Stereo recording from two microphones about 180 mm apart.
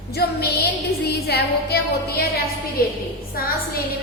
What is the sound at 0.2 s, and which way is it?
Music, 60° left (ahead or behind).